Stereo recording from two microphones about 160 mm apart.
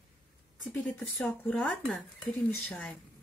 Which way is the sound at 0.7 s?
10° left (ahead or behind).